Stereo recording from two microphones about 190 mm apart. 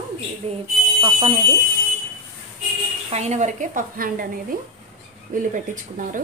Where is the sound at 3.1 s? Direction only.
35° right (ahead or behind).